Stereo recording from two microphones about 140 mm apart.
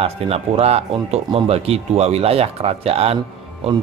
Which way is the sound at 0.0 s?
45° right (ahead or behind).